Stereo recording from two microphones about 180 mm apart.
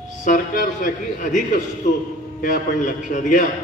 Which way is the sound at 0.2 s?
45° left (ahead or behind).